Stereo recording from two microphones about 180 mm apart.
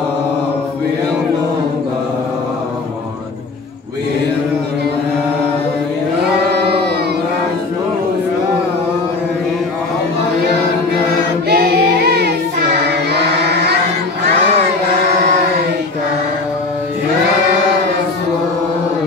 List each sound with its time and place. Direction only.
6.5 s music: 60° right (ahead or behind)
11.4 s music: 65° right (ahead or behind)
13.1 s chant: 65° right (ahead or behind)